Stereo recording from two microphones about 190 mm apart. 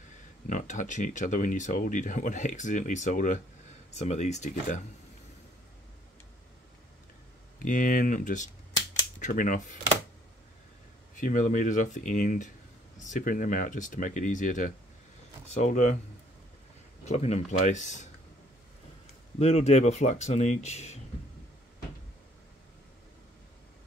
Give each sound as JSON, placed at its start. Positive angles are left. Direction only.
{"t": 0.5, "sound": "speech", "side_deg": 40}
{"t": 7.5, "sound": "speech", "side_deg": 45}
{"t": 11.1, "sound": "speech", "side_deg": 45}
{"t": 17.0, "sound": "speech", "side_deg": 35}
{"t": 19.3, "sound": "speech", "side_deg": 35}